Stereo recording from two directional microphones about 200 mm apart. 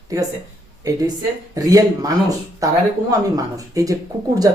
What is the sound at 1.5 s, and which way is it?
Speech, 20° right (ahead or behind).